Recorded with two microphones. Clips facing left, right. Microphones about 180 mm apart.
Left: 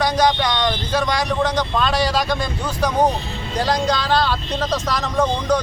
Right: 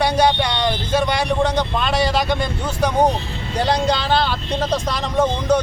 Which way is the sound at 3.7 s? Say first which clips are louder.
Right 1 dB; 25° right (ahead or behind).